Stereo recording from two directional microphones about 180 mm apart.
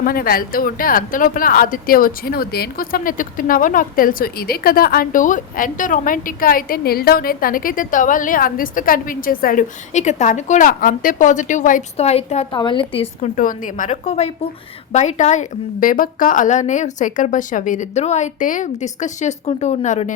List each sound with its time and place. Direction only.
0.0 s a woman's voice: 55° left (ahead or behind); by 13.3 s 30° left (ahead or behind)
13.3 s speech: 50° left (ahead or behind)